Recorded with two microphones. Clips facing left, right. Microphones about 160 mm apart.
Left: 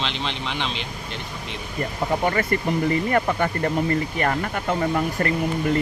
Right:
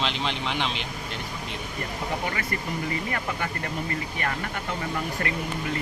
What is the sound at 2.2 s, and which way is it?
Speech, 45° left (ahead or behind).